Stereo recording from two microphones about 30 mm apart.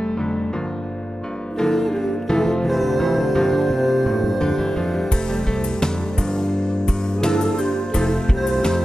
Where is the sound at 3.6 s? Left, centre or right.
Centre.